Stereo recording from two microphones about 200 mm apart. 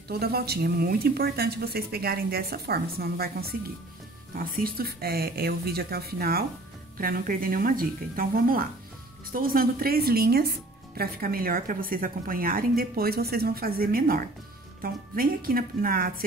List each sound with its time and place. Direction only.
0.1 s speech: 50° right (ahead or behind)